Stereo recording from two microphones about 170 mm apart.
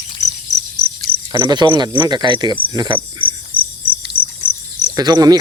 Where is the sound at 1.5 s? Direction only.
25° right (ahead or behind).